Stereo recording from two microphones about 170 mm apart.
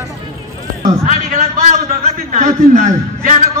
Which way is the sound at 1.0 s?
45° right (ahead or behind).